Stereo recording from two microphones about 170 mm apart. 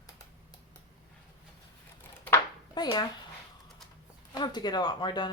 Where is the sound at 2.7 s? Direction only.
25° left (ahead or behind).